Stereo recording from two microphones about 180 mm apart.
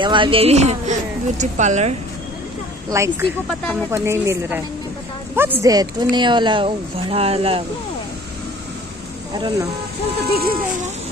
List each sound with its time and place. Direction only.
0.0 s speech: 25° right (ahead or behind)
2.9 s a woman's voice: 15° right (ahead or behind); by 7.6 s 30° right (ahead or behind)
10.2 s speech: 60° right (ahead or behind)